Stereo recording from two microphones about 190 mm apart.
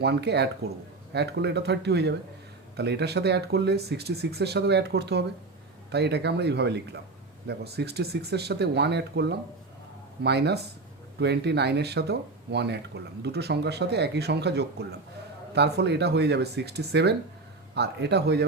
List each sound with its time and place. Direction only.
0.0 s speech: 60° right (ahead or behind)